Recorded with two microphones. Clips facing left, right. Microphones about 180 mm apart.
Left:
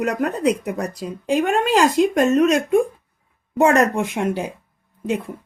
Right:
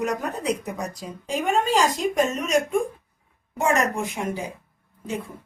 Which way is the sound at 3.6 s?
65° left (ahead or behind).